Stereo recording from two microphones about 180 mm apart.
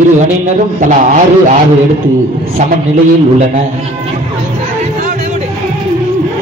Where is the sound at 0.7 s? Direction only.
45° right (ahead or behind).